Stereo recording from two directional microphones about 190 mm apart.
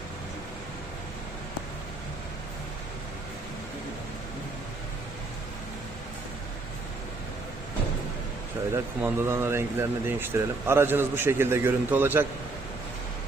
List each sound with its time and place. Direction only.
8.7 s speech: 15° right (ahead or behind)